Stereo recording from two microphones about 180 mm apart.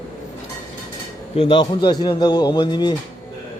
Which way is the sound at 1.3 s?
30° left (ahead or behind).